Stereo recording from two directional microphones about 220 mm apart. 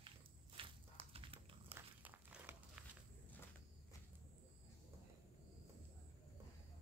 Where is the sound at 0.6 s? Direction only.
25° right (ahead or behind).